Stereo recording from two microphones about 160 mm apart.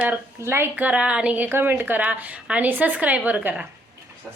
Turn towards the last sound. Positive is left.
turn(degrees=-10)  # may be behind; listen again after turning